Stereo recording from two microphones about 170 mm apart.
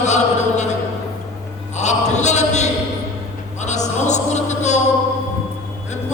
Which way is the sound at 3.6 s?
45° left (ahead or behind).